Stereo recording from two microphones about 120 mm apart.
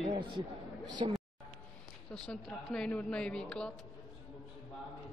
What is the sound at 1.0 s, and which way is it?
Speech, 55° right (ahead or behind).